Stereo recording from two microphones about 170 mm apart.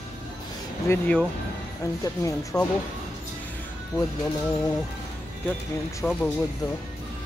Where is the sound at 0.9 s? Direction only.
15° left (ahead or behind).